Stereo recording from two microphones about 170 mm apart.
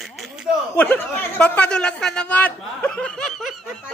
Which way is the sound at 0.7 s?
10° left (ahead or behind).